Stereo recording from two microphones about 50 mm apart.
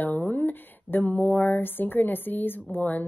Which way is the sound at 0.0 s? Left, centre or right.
Left.